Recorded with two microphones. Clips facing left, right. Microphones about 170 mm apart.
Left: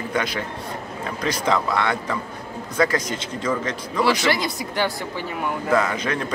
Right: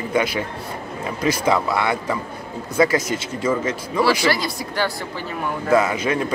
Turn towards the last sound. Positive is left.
turn(degrees=-10)  # may be behind; listen again after turning